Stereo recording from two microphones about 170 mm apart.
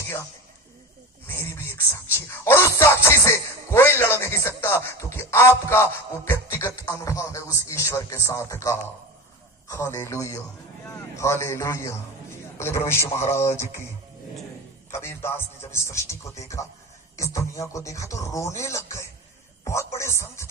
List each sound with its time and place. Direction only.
1.3 s music: 15° left (ahead or behind)
6.8 s a man's voice: 20° left (ahead or behind)
14.8 s a man's voice: 15° left (ahead or behind)
20.0 s speech: 15° left (ahead or behind)